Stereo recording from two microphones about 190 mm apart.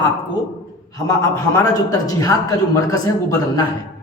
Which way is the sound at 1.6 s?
15° left (ahead or behind).